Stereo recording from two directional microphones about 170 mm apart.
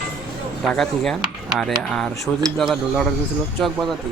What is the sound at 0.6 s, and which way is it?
Speech, centre (ahead or behind).